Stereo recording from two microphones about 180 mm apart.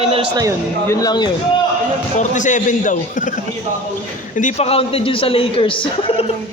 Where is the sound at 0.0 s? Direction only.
35° right (ahead or behind).